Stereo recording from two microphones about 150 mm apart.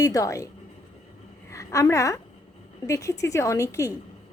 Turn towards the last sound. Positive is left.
turn(degrees=20)  # may be behind; listen again after turning